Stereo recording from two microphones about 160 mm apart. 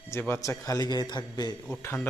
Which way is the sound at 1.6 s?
15° left (ahead or behind).